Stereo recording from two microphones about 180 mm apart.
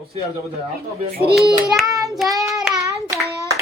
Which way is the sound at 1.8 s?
20° right (ahead or behind).